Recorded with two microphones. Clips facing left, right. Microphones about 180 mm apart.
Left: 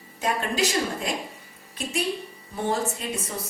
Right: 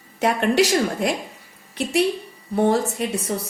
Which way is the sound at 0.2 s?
70° right (ahead or behind).